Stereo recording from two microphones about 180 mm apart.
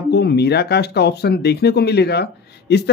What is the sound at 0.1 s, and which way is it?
Speech, 65° left (ahead or behind).